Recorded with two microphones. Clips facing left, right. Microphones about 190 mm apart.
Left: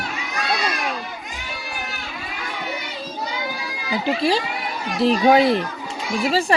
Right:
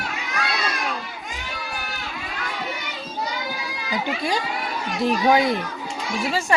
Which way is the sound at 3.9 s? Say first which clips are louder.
Left 5 dB; 30° left (ahead or behind).